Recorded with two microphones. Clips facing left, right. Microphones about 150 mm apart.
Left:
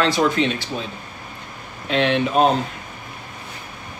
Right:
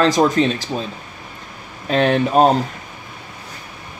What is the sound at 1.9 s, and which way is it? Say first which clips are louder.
Speech: right 3 dB; 40° right (ahead or behind).